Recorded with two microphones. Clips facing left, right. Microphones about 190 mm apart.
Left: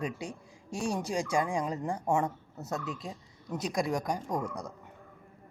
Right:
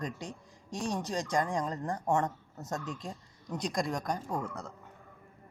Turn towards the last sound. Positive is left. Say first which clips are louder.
# left 2 dB
turn(degrees=15)  # may be behind; listen again after turning